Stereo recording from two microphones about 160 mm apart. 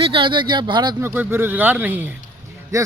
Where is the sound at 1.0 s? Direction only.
15° right (ahead or behind).